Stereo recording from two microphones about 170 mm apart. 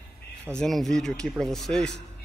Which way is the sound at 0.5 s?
Centre (ahead or behind).